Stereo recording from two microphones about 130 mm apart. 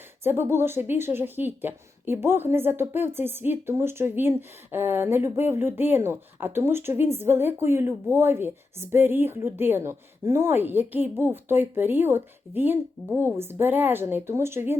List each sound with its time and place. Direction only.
0.2 s speech: 15° right (ahead or behind)